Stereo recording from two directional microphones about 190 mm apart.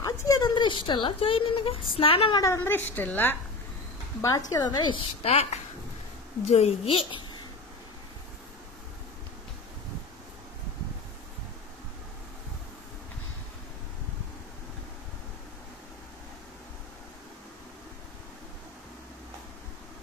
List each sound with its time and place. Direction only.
0.0 s a sound: 20° left (ahead or behind)
0.8 s a woman's voice: 25° left (ahead or behind); by 3.3 s 10° left (ahead or behind)
4.5 s a woman's voice: 20° left (ahead or behind)